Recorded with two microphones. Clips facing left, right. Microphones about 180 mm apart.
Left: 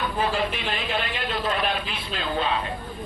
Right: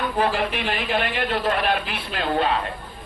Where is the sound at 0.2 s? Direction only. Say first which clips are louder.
Right 4 dB; 60° right (ahead or behind).